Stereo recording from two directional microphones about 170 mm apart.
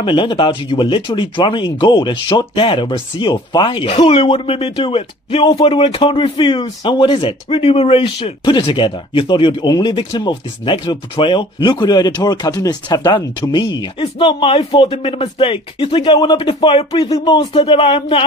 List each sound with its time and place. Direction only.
0.0 s speech: 30° left (ahead or behind)